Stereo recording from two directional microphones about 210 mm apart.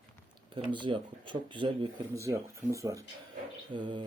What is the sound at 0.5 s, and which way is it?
Speech, 25° right (ahead or behind).